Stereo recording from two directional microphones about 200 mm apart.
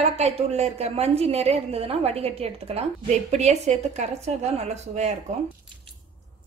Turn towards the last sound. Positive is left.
turn(degrees=-35)  # may be behind; listen again after turning